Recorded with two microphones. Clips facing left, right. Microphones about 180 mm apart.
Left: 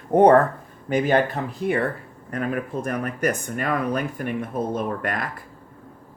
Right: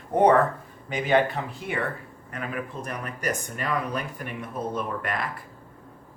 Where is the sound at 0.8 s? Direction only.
45° left (ahead or behind).